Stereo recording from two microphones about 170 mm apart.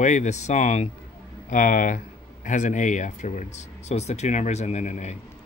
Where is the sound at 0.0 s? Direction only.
45° left (ahead or behind).